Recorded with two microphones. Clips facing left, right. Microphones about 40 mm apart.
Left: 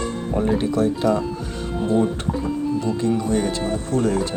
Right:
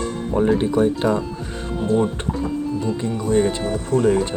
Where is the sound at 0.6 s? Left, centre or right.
Right.